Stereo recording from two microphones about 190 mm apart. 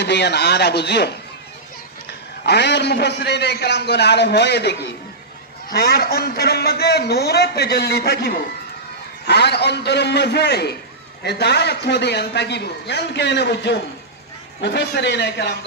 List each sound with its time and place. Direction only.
0.0 s a man's voice: 60° left (ahead or behind)